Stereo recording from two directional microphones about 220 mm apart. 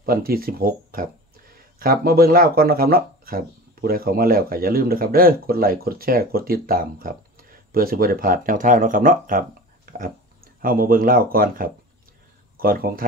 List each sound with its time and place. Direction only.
0.0 s speech: 40° right (ahead or behind)